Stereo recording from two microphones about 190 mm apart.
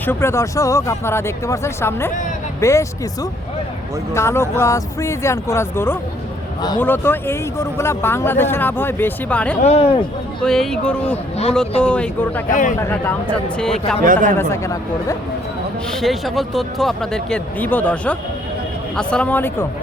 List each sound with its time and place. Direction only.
0.0 s speech: 10° left (ahead or behind)
9.6 s speech: 35° left (ahead or behind)
10.4 s speech: centre (ahead or behind)
12.5 s a man's voice: 45° left (ahead or behind)
13.6 s speech: 5° left (ahead or behind)
14.0 s speech: 45° right (ahead or behind)
14.3 s speech: 15° left (ahead or behind)
15.9 s speech: centre (ahead or behind)